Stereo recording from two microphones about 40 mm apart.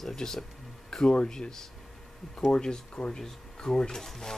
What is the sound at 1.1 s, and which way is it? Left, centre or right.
Speech, left.